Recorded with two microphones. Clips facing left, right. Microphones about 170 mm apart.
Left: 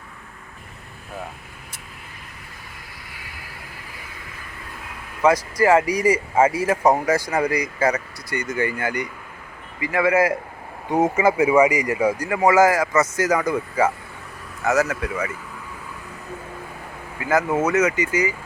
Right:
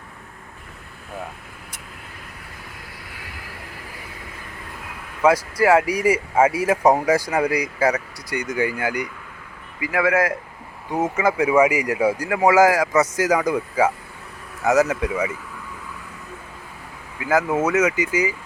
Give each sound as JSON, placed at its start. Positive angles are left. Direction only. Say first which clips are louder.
{"t": 5.2, "sound": "a man's voice", "louder": "even", "side_deg": -5}
{"t": 10.8, "sound": "speech", "louder": "left 3 dB", "side_deg": 15}
{"t": 17.2, "sound": "speech", "louder": "even", "side_deg": -10}